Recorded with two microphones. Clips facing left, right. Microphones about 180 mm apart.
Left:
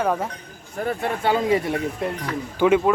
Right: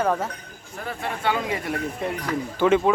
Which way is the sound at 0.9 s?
35° left (ahead or behind).